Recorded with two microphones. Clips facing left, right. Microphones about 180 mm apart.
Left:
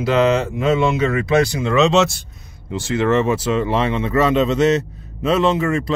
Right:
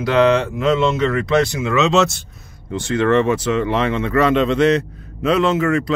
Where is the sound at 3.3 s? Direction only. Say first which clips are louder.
Even; 25° left (ahead or behind).